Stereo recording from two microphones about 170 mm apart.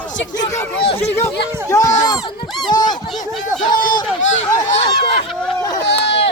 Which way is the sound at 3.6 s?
50° left (ahead or behind).